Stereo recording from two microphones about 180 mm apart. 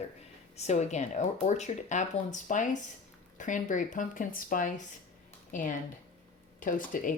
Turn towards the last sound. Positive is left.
turn(degrees=50)  # may be behind; listen again after turning